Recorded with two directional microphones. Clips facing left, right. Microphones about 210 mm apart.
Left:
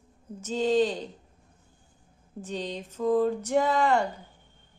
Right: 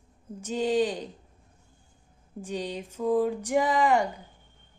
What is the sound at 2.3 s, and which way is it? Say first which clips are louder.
Speech: right 1 dB; 10° right (ahead or behind).